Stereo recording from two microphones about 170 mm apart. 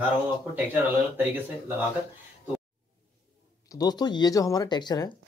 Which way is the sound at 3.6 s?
20° left (ahead or behind).